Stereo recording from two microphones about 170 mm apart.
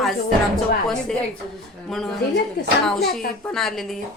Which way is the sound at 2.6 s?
65° left (ahead or behind).